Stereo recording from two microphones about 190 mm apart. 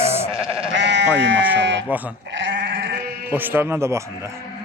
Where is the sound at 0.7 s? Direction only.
70° right (ahead or behind).